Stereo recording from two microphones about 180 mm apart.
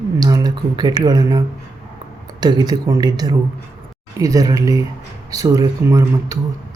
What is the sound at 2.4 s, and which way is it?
Speech, 25° right (ahead or behind).